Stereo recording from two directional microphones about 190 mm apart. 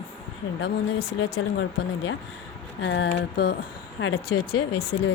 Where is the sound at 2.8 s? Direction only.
70° left (ahead or behind).